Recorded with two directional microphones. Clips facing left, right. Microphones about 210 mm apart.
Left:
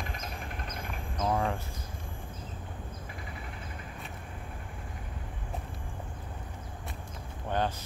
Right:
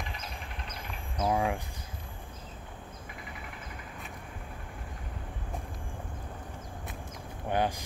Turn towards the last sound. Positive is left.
turn(degrees=-10)  # may be behind; listen again after turning